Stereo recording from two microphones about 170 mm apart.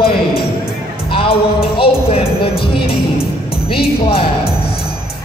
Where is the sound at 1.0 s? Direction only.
30° left (ahead or behind).